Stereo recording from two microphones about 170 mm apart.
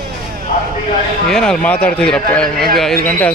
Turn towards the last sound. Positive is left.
turn(degrees=5)  # may be behind; listen again after turning